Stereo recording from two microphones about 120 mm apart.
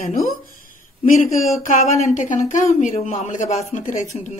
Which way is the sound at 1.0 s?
90° left.